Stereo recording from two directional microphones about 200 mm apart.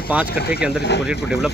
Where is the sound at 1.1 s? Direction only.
5° right (ahead or behind).